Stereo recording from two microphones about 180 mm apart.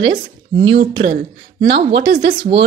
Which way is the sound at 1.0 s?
50° right (ahead or behind).